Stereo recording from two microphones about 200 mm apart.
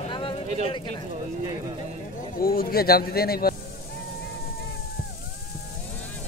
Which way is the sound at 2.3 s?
50° left (ahead or behind).